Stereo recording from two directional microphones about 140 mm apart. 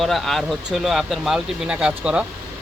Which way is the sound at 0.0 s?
Centre (ahead or behind).